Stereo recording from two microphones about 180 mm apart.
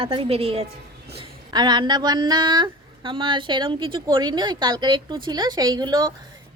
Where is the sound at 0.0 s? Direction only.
30° right (ahead or behind).